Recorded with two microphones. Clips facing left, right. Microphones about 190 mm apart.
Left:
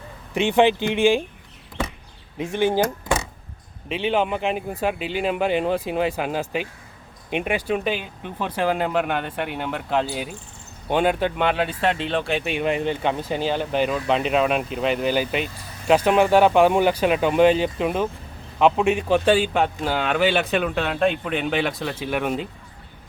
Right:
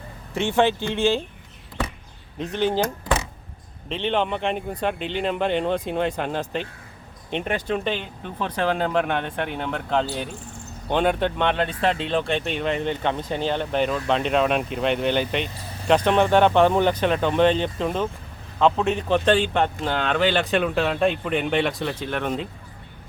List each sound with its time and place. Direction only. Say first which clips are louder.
0.3 s a man's voice: left 3 dB; 15° left (ahead or behind)
2.4 s a man's voice: left 2 dB; 10° left (ahead or behind)